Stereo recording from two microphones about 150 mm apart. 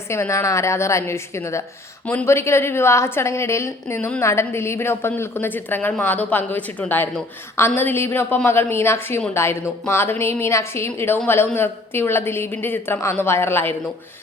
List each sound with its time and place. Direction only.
0.1 s a woman's voice: 20° left (ahead or behind)